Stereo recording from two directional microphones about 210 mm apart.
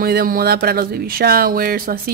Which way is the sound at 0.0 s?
45° right (ahead or behind).